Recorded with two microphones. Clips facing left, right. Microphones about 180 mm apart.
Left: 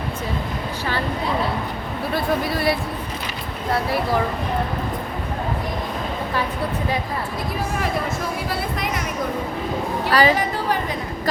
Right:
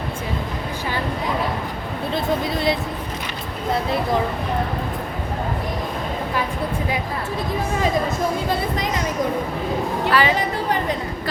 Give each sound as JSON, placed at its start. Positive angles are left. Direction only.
{"t": 2.1, "sound": "speech", "side_deg": -20}
{"t": 10.1, "sound": "a woman's voice", "side_deg": 40}